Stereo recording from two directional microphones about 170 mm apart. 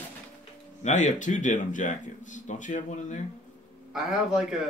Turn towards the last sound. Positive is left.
turn(degrees=-5)  # may be behind; listen again after turning